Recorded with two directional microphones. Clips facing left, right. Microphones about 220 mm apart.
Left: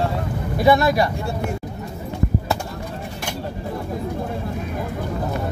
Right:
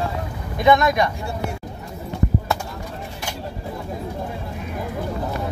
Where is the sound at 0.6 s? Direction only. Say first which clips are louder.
Left 1 dB; 35° left (ahead or behind).